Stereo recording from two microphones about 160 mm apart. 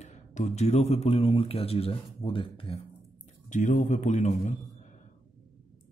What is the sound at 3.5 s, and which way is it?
A man's voice, 50° left (ahead or behind).